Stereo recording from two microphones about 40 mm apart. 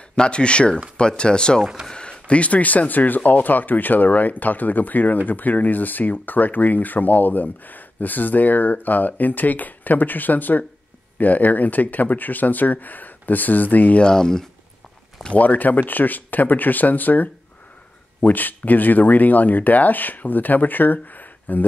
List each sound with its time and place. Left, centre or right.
0.1 s speech: left
1.6 s speech: centre
1.9 s speech: left
14.1 s speech: centre
15.3 s speech: left